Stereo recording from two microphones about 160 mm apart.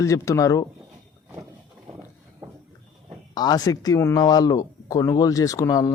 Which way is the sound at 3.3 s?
25° left (ahead or behind).